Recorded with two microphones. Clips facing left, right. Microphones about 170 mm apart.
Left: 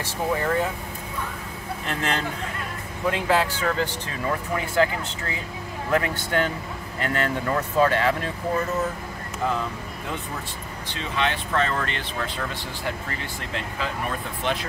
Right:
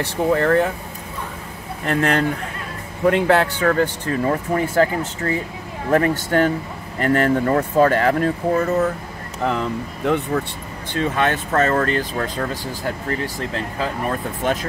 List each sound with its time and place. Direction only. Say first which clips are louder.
0.0 s speech: right 7 dB; 65° right (ahead or behind)
1.9 s speech: right 9 dB; 55° right (ahead or behind)
9.5 s speech: right 5 dB; 70° right (ahead or behind)
10.9 s speech: right 7 dB; 50° right (ahead or behind)